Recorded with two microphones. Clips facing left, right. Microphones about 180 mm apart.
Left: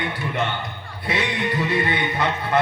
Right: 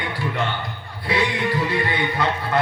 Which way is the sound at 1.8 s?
20° left (ahead or behind).